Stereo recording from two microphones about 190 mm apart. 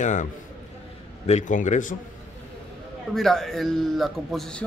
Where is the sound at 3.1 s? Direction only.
Centre (ahead or behind).